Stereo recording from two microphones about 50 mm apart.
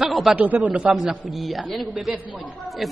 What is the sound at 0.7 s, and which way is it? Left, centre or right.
Speech, right.